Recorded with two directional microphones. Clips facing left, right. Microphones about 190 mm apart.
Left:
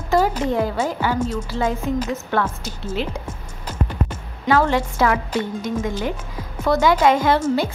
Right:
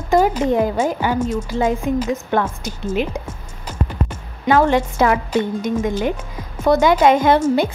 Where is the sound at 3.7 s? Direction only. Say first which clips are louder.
Right 1 dB; 15° right (ahead or behind).